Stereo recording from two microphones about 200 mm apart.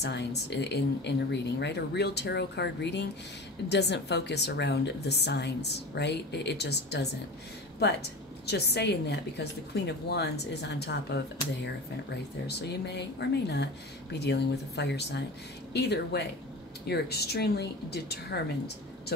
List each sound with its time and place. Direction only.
0.0 s speech: 55° left (ahead or behind)
8.5 s speech: 55° left (ahead or behind)
12.4 s speech: 55° left (ahead or behind)